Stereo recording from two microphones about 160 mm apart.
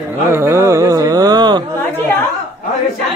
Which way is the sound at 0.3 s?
15° right (ahead or behind).